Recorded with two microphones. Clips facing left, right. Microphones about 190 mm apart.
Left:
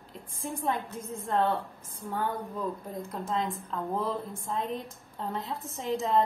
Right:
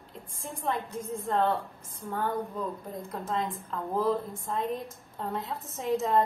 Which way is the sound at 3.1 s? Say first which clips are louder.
Even; centre (ahead or behind).